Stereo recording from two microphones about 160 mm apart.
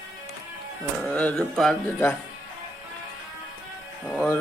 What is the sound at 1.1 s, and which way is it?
Speech, 5° left (ahead or behind).